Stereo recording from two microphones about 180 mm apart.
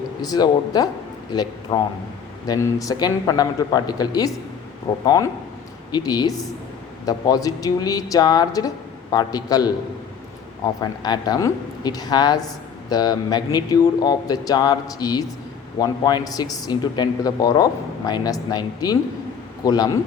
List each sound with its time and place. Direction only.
0.2 s speech: 20° left (ahead or behind)
10.8 s speech: 20° left (ahead or behind)